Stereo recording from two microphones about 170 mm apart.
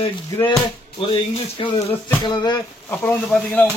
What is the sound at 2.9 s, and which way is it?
Speech, 10° left (ahead or behind).